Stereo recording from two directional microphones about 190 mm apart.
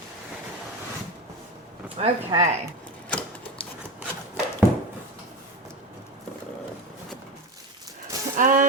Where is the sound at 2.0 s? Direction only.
30° right (ahead or behind).